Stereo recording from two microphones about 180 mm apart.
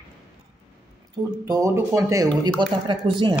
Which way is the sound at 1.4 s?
15° right (ahead or behind).